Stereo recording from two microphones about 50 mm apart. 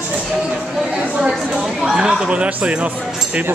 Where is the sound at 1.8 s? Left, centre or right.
Centre.